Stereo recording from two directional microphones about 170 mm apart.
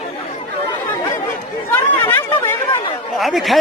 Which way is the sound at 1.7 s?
10° left (ahead or behind).